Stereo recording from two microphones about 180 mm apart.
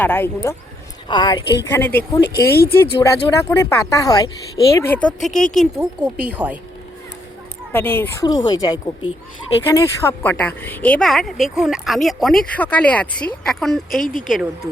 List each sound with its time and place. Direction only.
0.0 s a woman's voice: 10° left (ahead or behind)
1.0 s a woman's voice: 25° left (ahead or behind)
1.7 s a woman's voice: 10° left (ahead or behind); by 6.6 s 5° right (ahead or behind)
7.7 s a woman's voice: 10° left (ahead or behind)
14.0 s speech: 50° left (ahead or behind)
14.3 s speech: centre (ahead or behind)